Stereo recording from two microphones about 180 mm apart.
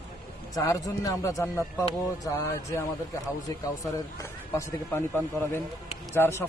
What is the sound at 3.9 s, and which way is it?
A man's voice, 15° left (ahead or behind).